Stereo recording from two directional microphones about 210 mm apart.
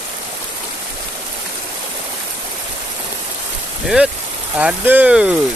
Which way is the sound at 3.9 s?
5° right (ahead or behind).